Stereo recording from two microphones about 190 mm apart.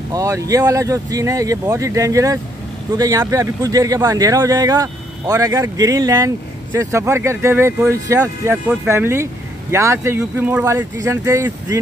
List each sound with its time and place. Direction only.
0.1 s speech: 15° right (ahead or behind)